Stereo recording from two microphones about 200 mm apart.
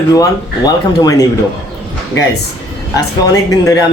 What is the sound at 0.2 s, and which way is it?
Speech, 20° left (ahead or behind).